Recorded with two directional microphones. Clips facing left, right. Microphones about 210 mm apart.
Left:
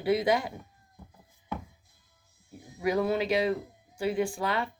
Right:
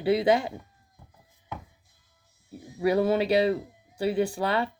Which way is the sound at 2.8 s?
30° right (ahead or behind).